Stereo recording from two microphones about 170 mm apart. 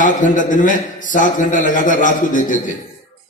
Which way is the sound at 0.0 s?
50° left (ahead or behind).